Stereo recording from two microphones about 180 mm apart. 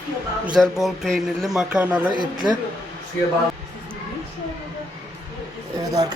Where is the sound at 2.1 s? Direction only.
25° right (ahead or behind).